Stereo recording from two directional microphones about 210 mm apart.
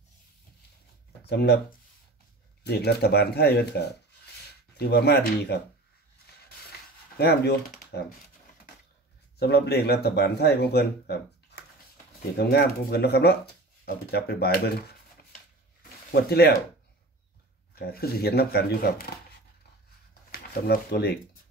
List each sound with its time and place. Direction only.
1.2 s speech: 50° left (ahead or behind)
2.6 s speech: 50° left (ahead or behind)
7.2 s speech: 50° left (ahead or behind)
9.4 s speech: 50° left (ahead or behind)
16.1 s speech: 50° left (ahead or behind)
17.7 s speech: 50° left (ahead or behind)
20.2 s speech: 50° left (ahead or behind)